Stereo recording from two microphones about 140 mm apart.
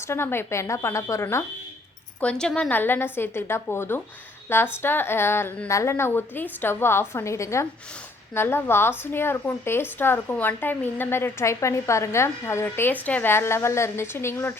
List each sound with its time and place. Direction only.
0.0 s a woman's voice: 15° left (ahead or behind)
2.2 s a woman's voice: 5° left (ahead or behind)